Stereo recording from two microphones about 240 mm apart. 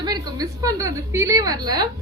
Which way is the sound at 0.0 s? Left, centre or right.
Centre.